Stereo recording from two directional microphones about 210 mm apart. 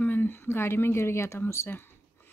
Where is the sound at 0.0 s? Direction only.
10° left (ahead or behind).